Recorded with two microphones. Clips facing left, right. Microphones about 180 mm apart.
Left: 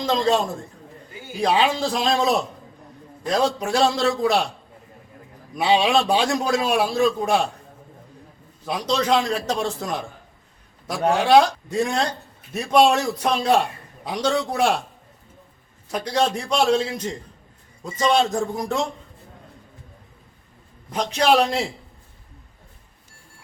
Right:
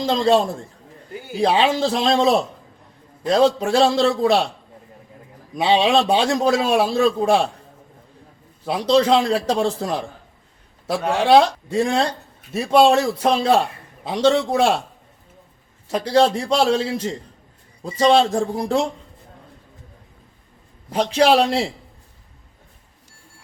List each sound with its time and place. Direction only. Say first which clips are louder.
0.0 s a man's voice: right 3 dB; 30° right (ahead or behind)
5.5 s a man's voice: right 2 dB; 25° right (ahead or behind)
8.6 s a man's voice: right 6 dB; 30° right (ahead or behind)
11.3 s a man's voice: right 3 dB; 30° right (ahead or behind)
15.9 s a man's voice: right 5 dB; 30° right (ahead or behind)
20.9 s a man's voice: right 3 dB; 30° right (ahead or behind)